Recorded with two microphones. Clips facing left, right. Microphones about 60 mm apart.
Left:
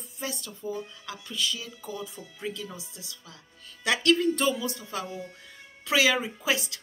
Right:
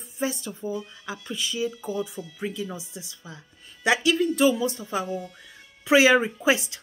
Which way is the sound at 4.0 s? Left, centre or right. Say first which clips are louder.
Even; centre.